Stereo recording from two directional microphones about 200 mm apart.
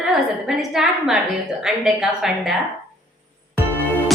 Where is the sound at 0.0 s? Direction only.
Centre (ahead or behind).